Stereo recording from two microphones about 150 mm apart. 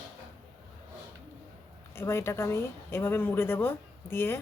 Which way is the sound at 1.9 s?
15° left (ahead or behind).